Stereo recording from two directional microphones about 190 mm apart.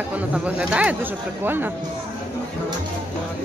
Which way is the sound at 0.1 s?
5° right (ahead or behind).